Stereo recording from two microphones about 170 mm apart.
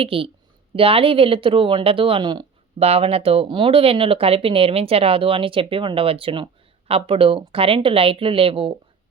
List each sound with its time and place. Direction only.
0.0 s speech: 35° right (ahead or behind)
2.7 s speech: 35° right (ahead or behind)